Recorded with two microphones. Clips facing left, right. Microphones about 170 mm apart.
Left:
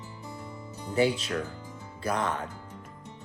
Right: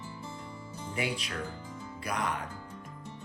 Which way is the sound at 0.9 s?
30° left (ahead or behind).